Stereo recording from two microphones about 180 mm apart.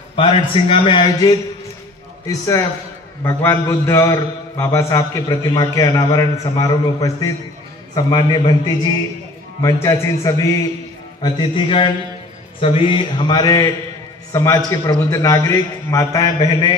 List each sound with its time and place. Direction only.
0.1 s a man's voice: 30° left (ahead or behind)
9.6 s a man's voice: 15° left (ahead or behind)